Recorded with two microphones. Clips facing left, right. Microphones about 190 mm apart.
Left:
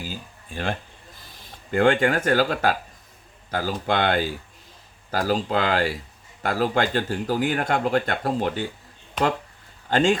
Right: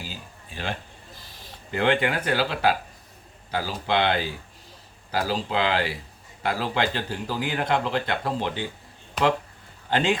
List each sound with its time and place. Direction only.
0.0 s a sound: 50° left (ahead or behind)
1.7 s speech: 45° left (ahead or behind)
9.9 s speech: 45° left (ahead or behind)